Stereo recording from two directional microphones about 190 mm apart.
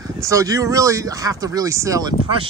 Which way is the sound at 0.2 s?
15° right (ahead or behind).